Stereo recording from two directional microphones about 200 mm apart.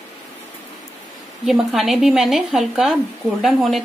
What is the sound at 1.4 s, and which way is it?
Speech, centre (ahead or behind).